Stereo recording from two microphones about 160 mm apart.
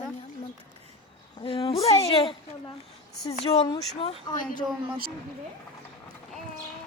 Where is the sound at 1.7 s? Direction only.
40° left (ahead or behind).